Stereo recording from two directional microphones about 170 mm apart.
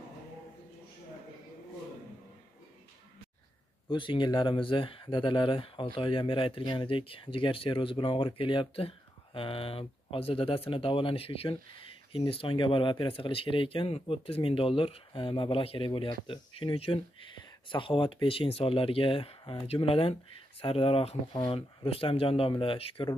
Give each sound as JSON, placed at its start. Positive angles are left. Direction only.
{"t": 3.9, "sound": "speech", "side_deg": 30}